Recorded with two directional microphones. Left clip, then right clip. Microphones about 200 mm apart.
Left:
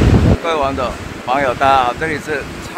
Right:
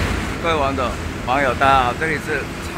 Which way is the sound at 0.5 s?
15° left (ahead or behind).